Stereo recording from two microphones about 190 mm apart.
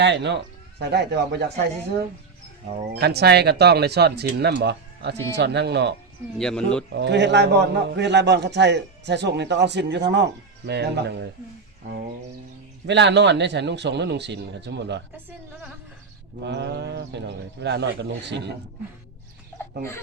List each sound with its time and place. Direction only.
0.0 s a man's voice: 65° right (ahead or behind)
6.4 s speech: 5° left (ahead or behind)
6.9 s a man's voice: 65° right (ahead or behind)
12.9 s a man's voice: 65° right (ahead or behind)
16.4 s a man's voice: 65° right (ahead or behind)